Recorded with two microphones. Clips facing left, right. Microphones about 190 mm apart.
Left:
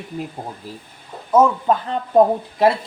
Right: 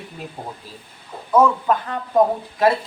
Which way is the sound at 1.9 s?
20° left (ahead or behind).